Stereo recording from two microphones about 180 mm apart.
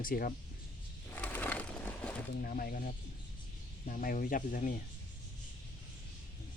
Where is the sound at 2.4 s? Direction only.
50° left (ahead or behind).